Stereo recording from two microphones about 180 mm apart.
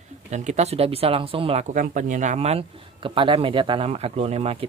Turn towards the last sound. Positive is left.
turn(degrees=-35)  # may be behind; listen again after turning